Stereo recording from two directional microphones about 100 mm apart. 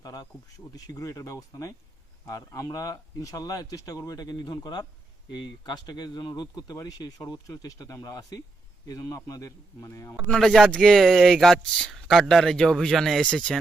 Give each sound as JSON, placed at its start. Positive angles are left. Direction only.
{"t": 0.0, "sound": "speech", "side_deg": 40}
{"t": 10.2, "sound": "speech", "side_deg": 5}